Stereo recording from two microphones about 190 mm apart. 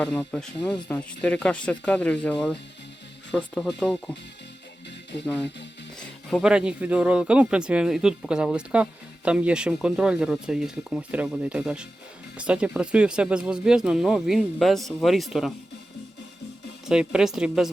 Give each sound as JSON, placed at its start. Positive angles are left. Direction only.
{"t": 0.0, "sound": "speech", "side_deg": 5}
{"t": 3.3, "sound": "speech", "side_deg": 5}
{"t": 5.2, "sound": "speech", "side_deg": 5}
{"t": 16.8, "sound": "speech", "side_deg": -5}